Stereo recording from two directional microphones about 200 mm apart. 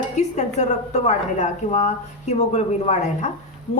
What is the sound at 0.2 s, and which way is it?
A woman's voice, 35° left (ahead or behind).